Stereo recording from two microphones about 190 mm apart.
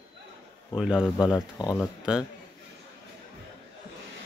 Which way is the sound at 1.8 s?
5° right (ahead or behind).